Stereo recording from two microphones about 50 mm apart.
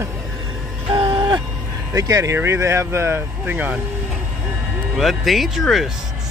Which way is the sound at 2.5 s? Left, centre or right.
Right.